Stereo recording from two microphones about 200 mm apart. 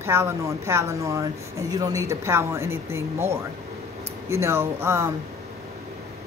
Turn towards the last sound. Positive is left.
turn(degrees=-15)  # may be behind; listen again after turning